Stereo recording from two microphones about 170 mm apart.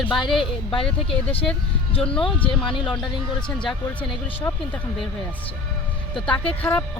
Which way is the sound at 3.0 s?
5° left (ahead or behind).